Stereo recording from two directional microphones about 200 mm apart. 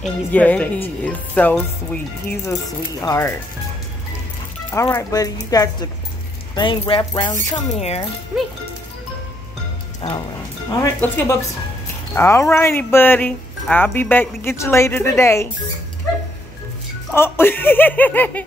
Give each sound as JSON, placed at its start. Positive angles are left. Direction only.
{"t": 0.0, "sound": "speech", "side_deg": 5}
{"t": 4.6, "sound": "speech", "side_deg": 15}
{"t": 8.3, "sound": "speech", "side_deg": -5}
{"t": 10.8, "sound": "speech", "side_deg": 15}
{"t": 17.1, "sound": "speech", "side_deg": 10}